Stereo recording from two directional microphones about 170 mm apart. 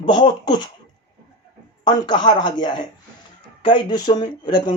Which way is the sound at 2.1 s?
25° left (ahead or behind).